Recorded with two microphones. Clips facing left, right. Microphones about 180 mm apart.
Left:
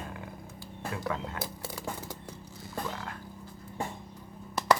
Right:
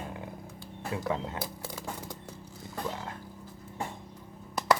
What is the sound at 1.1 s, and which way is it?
Speech, 20° right (ahead or behind).